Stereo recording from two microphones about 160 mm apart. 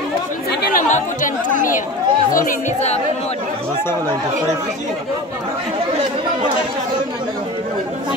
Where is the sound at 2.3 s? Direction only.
50° left (ahead or behind).